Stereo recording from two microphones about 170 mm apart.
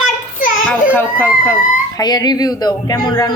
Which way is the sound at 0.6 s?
10° left (ahead or behind).